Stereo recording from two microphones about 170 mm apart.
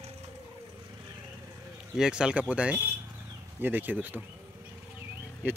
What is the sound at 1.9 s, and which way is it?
Speech, 5° right (ahead or behind).